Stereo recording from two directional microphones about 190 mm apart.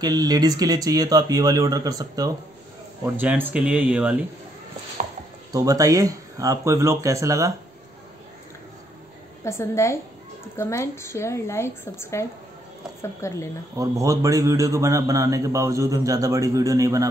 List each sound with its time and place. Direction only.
0.0 s a man's voice: 20° right (ahead or behind)
5.0 s a sound: 40° right (ahead or behind)
5.5 s a man's voice: 20° right (ahead or behind)
9.4 s a woman's voice: 15° left (ahead or behind)
13.7 s a man's voice: 15° right (ahead or behind)